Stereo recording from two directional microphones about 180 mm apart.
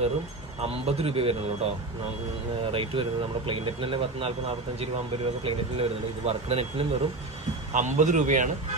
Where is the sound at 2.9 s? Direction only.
25° right (ahead or behind).